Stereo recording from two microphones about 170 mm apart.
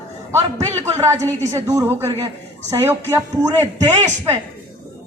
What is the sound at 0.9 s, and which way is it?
A woman's voice, 20° right (ahead or behind).